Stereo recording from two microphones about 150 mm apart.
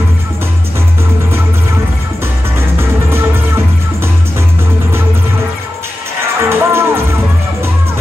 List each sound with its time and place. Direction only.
2.8 s music: 15° right (ahead or behind)
6.4 s music: 15° right (ahead or behind)